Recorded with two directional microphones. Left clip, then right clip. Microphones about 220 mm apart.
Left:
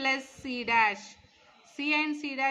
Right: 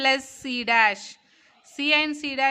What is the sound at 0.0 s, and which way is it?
Speech, 50° right (ahead or behind).